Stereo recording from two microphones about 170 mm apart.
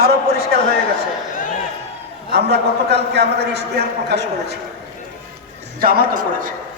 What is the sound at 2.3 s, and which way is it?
A man's voice, 75° right (ahead or behind).